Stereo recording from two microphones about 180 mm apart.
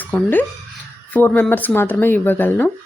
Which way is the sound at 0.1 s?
10° left (ahead or behind).